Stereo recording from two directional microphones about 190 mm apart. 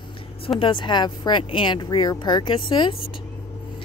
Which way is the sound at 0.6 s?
25° left (ahead or behind).